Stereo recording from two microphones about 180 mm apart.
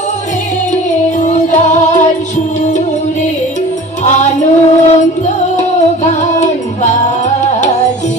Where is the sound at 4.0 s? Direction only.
40° left (ahead or behind).